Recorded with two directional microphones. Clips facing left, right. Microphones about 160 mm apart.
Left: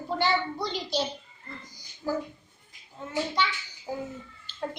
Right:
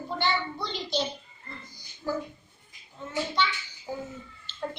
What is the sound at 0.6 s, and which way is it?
Speech, 40° left (ahead or behind).